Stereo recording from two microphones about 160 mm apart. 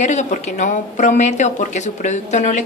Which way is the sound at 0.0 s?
50° left (ahead or behind).